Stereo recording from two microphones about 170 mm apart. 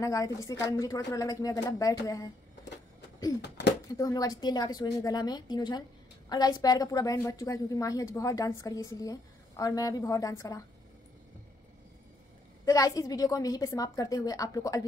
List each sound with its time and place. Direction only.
0.0 s a woman's voice: 20° left (ahead or behind)
3.4 s speech: 85° left
3.9 s a woman's voice: 20° left (ahead or behind)
12.6 s a woman's voice: 20° left (ahead or behind)